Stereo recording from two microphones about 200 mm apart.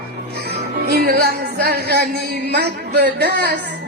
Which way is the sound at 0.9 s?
50° right (ahead or behind).